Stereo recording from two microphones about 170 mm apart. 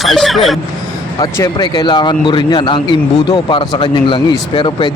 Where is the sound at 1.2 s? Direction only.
20° left (ahead or behind).